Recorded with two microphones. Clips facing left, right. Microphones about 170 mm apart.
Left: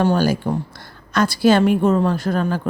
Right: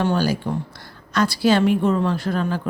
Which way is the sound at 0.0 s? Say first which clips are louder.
Left 3 dB; 45° left (ahead or behind).